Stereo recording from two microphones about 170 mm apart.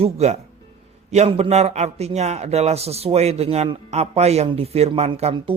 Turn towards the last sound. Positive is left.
turn(degrees=-35)  # may be behind; listen again after turning